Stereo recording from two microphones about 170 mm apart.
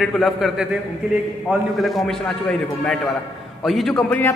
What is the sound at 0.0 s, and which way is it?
A man's voice, centre (ahead or behind).